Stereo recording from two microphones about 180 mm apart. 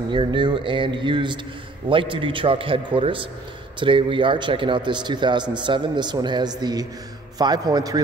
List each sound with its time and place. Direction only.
0.1 s speech: 25° right (ahead or behind)